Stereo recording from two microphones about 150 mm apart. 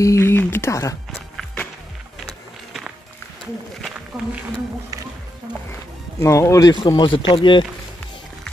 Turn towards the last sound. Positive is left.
turn(degrees=35)  # may be behind; listen again after turning